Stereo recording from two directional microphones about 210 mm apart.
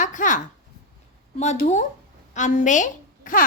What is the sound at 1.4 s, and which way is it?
A woman's voice, 35° left (ahead or behind).